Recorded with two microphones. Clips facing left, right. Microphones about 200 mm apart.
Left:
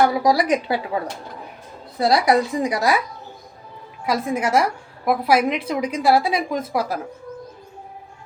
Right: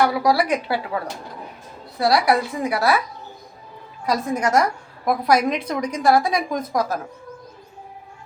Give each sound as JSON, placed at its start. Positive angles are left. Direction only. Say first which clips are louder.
{"t": 0.1, "sound": "a woman's voice", "louder": "left 1 dB", "side_deg": 20}
{"t": 2.0, "sound": "a woman's voice", "louder": "left 1 dB", "side_deg": 20}
{"t": 4.0, "sound": "a woman's voice", "louder": "even", "side_deg": 5}